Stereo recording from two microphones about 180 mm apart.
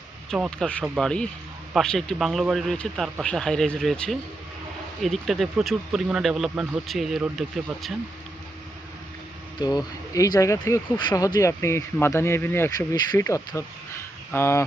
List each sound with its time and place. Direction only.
0.3 s speech: centre (ahead or behind)
9.6 s speech: 25° left (ahead or behind)